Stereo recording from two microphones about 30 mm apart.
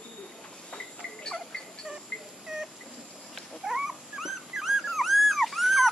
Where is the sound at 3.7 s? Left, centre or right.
Centre.